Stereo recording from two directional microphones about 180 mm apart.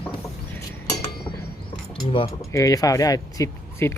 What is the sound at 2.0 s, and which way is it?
Speech, 30° left (ahead or behind).